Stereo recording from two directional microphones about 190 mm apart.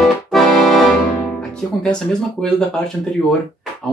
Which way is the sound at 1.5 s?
5° left (ahead or behind).